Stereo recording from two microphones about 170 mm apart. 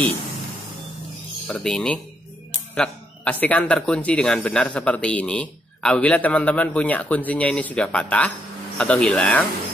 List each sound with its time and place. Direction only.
1.5 s a man's voice: 5° left (ahead or behind)